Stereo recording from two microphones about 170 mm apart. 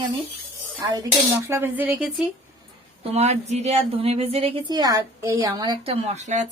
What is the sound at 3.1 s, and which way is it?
Speech, 40° right (ahead or behind).